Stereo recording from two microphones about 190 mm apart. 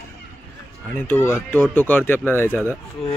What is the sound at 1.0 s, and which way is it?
A man's voice, 10° left (ahead or behind).